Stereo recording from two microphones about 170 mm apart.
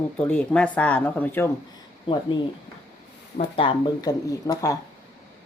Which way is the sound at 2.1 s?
30° left (ahead or behind).